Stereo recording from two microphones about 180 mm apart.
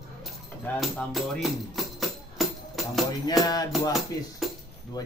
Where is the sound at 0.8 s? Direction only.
Centre (ahead or behind).